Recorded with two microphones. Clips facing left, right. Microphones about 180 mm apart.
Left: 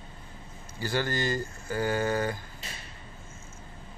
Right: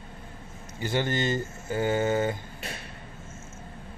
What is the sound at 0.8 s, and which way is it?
Speech, 20° right (ahead or behind).